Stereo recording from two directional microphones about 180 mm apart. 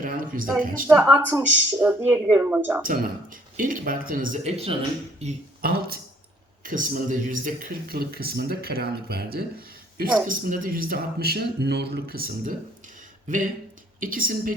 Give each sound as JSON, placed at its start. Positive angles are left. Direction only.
{"t": 0.0, "sound": "a sound", "side_deg": -50}
{"t": 0.6, "sound": "speech", "side_deg": -50}
{"t": 0.9, "sound": "speech", "side_deg": -10}
{"t": 2.8, "sound": "speech", "side_deg": -50}
{"t": 5.6, "sound": "speech", "side_deg": -60}
{"t": 6.6, "sound": "speech", "side_deg": -45}